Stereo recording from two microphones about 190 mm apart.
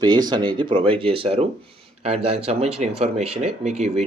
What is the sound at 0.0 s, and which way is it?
Speech, 20° right (ahead or behind).